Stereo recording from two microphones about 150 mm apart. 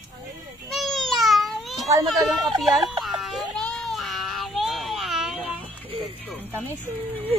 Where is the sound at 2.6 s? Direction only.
Centre (ahead or behind).